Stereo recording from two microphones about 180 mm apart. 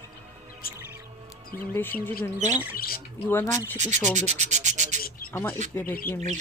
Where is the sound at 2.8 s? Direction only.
55° left (ahead or behind).